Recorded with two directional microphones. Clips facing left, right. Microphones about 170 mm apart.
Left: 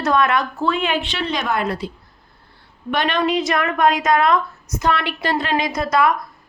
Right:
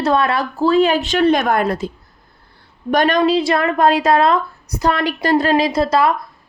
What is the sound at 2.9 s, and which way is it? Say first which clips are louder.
A woman's voice: right 5 dB; 40° right (ahead or behind).